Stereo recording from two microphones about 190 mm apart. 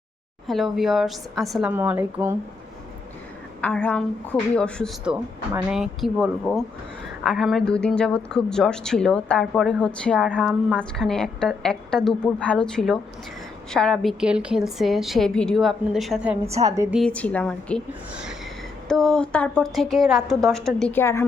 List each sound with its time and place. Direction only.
0.4 s a woman's voice: centre (ahead or behind)
3.6 s a woman's voice: 5° left (ahead or behind); by 16.9 s 15° right (ahead or behind)
16.9 s a woman's voice: 5° left (ahead or behind)